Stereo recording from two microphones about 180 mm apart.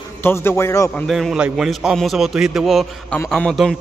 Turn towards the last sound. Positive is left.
turn(degrees=5)  # may be behind; listen again after turning